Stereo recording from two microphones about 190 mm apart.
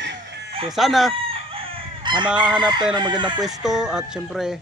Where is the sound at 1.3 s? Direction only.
30° right (ahead or behind).